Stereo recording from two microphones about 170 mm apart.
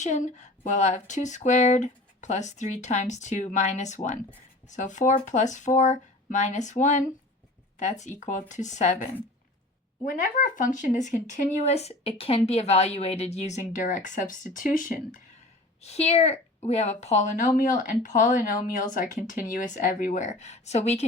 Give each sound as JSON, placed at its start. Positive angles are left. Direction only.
{"t": 0.0, "sound": "speech", "side_deg": 45}
{"t": 15.8, "sound": "a woman's voice", "side_deg": 40}